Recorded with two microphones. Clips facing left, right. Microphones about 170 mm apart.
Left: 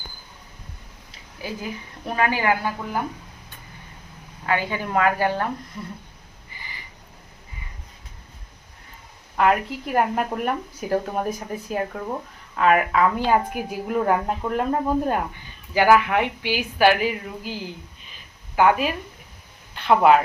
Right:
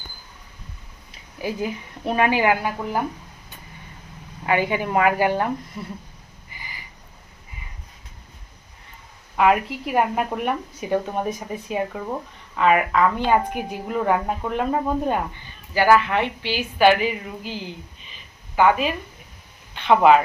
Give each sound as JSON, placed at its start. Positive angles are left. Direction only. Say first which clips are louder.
{"t": 1.4, "sound": "speech", "louder": "right 5 dB", "side_deg": -20}
{"t": 4.4, "sound": "a woman's voice", "louder": "right 3 dB", "side_deg": -15}
{"t": 9.4, "sound": "speech", "louder": "right 2 dB", "side_deg": -5}
{"t": 15.7, "sound": "a woman's voice", "louder": "even", "side_deg": 15}